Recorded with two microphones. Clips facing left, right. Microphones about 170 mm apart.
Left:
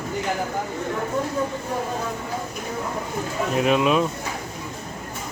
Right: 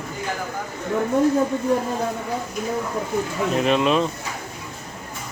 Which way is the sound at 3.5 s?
5° left (ahead or behind).